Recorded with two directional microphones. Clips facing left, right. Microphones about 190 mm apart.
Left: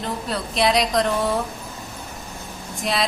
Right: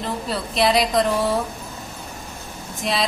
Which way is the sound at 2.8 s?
Centre (ahead or behind).